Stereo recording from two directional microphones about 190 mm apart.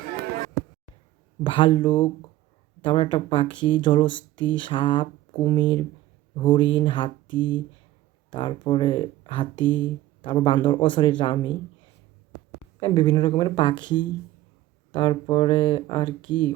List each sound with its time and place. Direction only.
1.5 s speech: 25° left (ahead or behind)
12.8 s speech: 25° left (ahead or behind)